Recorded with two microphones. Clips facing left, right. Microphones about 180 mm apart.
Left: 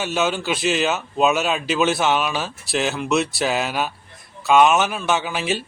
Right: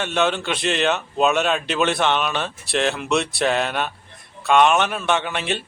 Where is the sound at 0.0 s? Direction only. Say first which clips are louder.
Right 1 dB; 5° left (ahead or behind).